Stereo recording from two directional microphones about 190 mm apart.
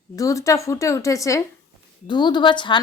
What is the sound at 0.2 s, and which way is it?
A woman's voice, 15° left (ahead or behind).